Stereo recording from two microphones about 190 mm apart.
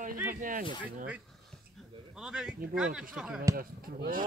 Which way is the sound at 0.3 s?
45° right (ahead or behind).